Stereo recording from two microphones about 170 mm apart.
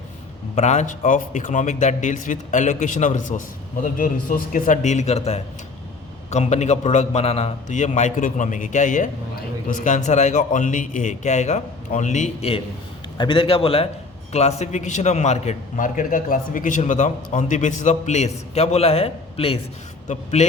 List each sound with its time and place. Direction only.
0.5 s a man's voice: 45° left (ahead or behind)